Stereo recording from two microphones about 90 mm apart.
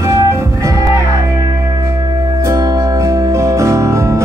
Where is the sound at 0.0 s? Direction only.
35° right (ahead or behind).